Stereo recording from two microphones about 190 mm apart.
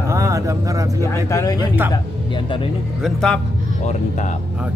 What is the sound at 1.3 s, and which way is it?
Speech, 20° left (ahead or behind).